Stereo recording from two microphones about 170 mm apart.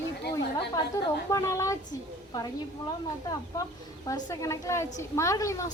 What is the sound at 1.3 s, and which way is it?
Speech, 20° left (ahead or behind).